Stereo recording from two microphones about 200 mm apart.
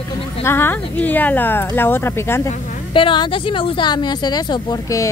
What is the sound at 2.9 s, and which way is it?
Speech, 25° left (ahead or behind).